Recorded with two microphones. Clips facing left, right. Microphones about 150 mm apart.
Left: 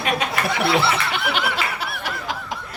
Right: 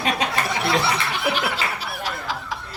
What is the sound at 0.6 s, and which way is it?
Snicker, 65° left (ahead or behind).